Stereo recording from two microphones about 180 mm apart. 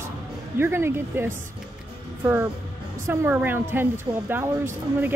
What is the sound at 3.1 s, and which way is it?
Speech, 10° right (ahead or behind).